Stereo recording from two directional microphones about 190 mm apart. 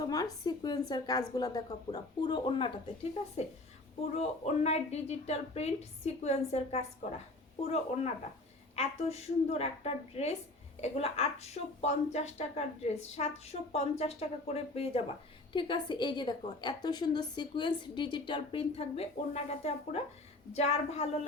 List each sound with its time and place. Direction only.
0.0 s a woman's voice: 20° left (ahead or behind)